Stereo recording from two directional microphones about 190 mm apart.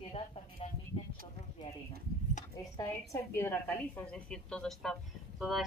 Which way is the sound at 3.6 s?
10° left (ahead or behind).